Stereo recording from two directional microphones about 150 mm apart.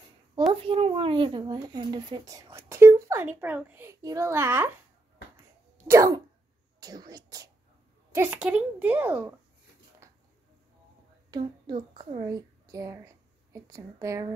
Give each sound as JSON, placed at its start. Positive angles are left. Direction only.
{"t": 0.5, "sound": "speech", "side_deg": -35}
{"t": 5.9, "sound": "speech", "side_deg": -25}
{"t": 8.1, "sound": "a woman's voice", "side_deg": -10}
{"t": 11.2, "sound": "speech", "side_deg": -30}
{"t": 12.3, "sound": "a woman's voice", "side_deg": -25}